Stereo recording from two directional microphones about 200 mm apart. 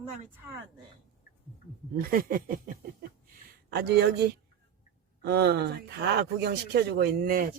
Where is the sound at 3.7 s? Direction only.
55° right (ahead or behind).